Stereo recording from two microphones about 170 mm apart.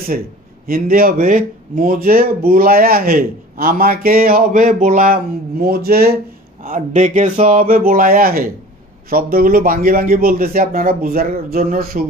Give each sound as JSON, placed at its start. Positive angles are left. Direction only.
{"t": 0.7, "sound": "speech", "side_deg": -60}
{"t": 6.6, "sound": "speech", "side_deg": -50}